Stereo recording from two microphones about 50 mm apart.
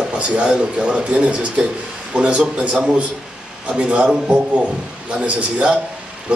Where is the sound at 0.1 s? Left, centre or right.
Right.